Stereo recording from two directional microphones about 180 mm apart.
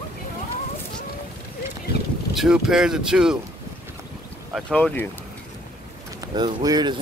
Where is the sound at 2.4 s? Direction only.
5° right (ahead or behind).